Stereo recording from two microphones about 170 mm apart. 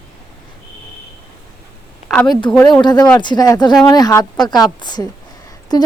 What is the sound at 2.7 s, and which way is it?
Speech, 25° left (ahead or behind).